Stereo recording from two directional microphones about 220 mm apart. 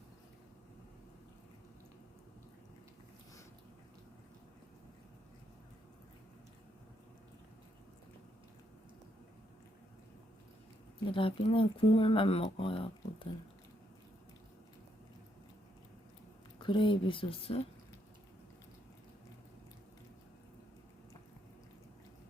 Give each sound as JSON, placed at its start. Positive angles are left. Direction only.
{"t": 11.1, "sound": "speech", "side_deg": 25}
{"t": 16.6, "sound": "speech", "side_deg": 20}